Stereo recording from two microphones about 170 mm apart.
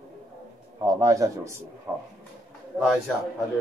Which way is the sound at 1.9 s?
15° right (ahead or behind).